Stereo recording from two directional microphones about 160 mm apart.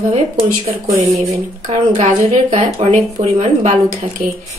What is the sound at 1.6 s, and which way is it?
Speech, 45° right (ahead or behind).